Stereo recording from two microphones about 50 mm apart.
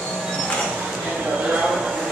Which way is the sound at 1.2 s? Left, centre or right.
Centre.